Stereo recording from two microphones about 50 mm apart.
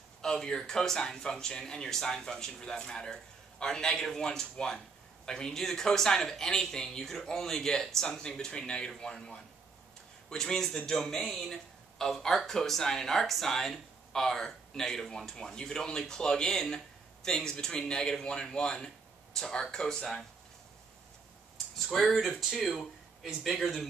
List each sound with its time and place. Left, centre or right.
0.2 s speech: centre
21.9 s speech: centre